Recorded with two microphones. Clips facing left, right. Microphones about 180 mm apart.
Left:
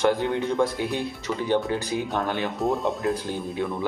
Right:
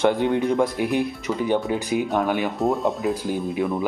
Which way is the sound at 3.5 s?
15° right (ahead or behind).